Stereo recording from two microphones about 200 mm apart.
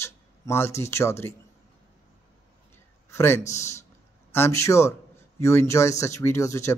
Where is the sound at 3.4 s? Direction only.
35° left (ahead or behind).